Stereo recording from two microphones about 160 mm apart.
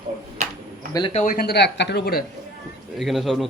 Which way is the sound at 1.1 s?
55° left (ahead or behind).